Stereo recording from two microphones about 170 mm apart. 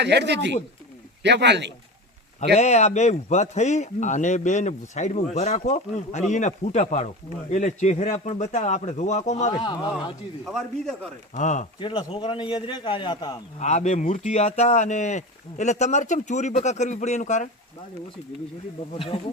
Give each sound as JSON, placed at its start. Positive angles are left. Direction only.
{"t": 0.0, "sound": "speech", "side_deg": -90}
{"t": 2.6, "sound": "speech", "side_deg": 40}
{"t": 9.6, "sound": "a man's voice", "side_deg": 25}
{"t": 10.4, "sound": "a man's voice", "side_deg": 0}
{"t": 11.3, "sound": "speech", "side_deg": 45}
{"t": 11.8, "sound": "a man's voice", "side_deg": 30}
{"t": 13.6, "sound": "speech", "side_deg": 45}
{"t": 18.9, "sound": "speech", "side_deg": 35}